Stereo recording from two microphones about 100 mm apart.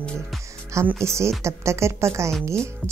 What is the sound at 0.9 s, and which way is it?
Speech, 30° right (ahead or behind).